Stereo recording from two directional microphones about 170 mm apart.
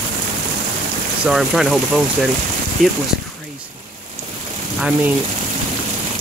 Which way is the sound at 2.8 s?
50° right (ahead or behind).